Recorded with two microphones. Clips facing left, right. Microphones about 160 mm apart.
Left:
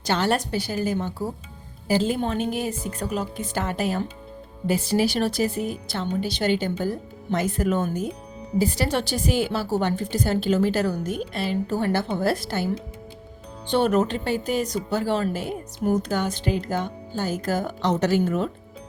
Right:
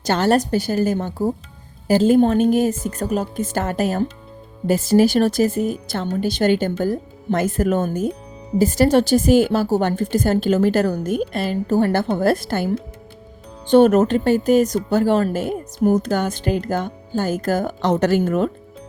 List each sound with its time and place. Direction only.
0.0 s speech: 45° right (ahead or behind)